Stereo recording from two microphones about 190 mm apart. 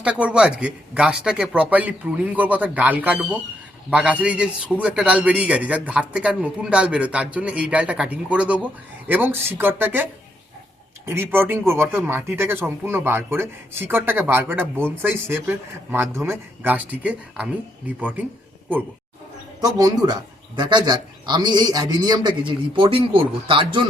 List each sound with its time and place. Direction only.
0.0 s speech: 5° right (ahead or behind)
19.6 s a man's voice: 20° right (ahead or behind)